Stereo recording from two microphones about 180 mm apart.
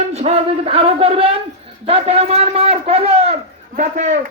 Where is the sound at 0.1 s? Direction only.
35° right (ahead or behind).